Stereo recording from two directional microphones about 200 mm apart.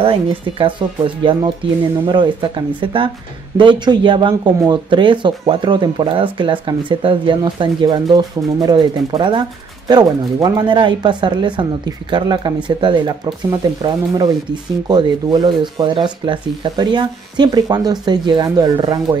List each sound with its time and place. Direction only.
0.0 s speech: 25° right (ahead or behind)